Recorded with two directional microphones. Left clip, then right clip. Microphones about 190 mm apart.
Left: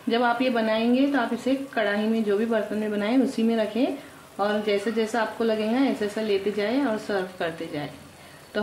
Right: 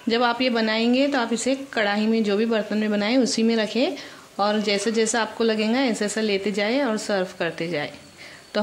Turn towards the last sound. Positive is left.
turn(degrees=-40)  # may be behind; listen again after turning